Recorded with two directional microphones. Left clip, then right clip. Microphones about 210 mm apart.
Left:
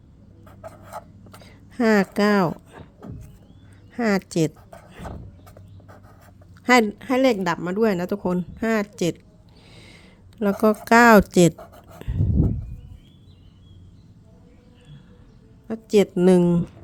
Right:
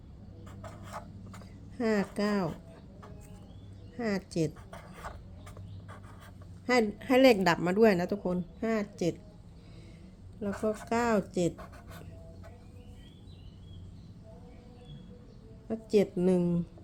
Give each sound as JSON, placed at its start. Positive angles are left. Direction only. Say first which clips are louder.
{"t": 1.4, "sound": "a sound", "louder": "left 11 dB", "side_deg": 35}
{"t": 3.9, "sound": "speech", "louder": "left 10 dB", "side_deg": 35}
{"t": 6.7, "sound": "speech", "louder": "left 10 dB", "side_deg": 35}
{"t": 7.0, "sound": "a woman's voice", "louder": "left 3 dB", "side_deg": 20}
{"t": 10.6, "sound": "speech", "louder": "left 16 dB", "side_deg": 40}
{"t": 11.5, "sound": "dog", "louder": "left 6 dB", "side_deg": -5}
{"t": 15.6, "sound": "speech", "louder": "left 8 dB", "side_deg": 30}